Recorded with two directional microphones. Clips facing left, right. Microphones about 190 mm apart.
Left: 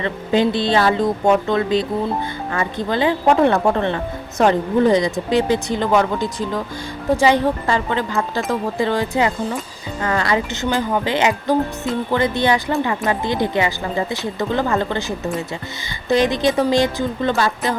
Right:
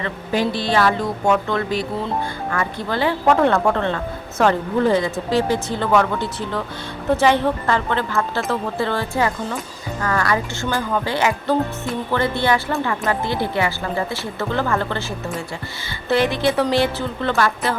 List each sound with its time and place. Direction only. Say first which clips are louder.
0.0 s a woman's voice: left 4 dB; 20° left (ahead or behind)